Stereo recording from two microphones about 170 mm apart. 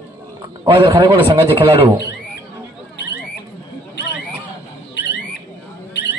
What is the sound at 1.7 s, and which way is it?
Speech, 35° right (ahead or behind).